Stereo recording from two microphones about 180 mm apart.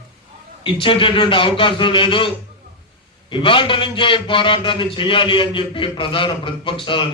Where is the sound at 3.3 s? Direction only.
30° left (ahead or behind).